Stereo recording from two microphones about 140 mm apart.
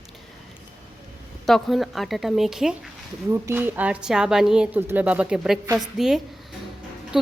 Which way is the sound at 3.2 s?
20° right (ahead or behind).